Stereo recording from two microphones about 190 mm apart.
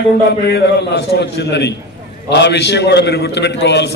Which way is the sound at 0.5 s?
65° left (ahead or behind).